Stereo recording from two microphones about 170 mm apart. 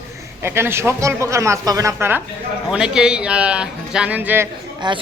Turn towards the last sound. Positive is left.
turn(degrees=-25)  # may be behind; listen again after turning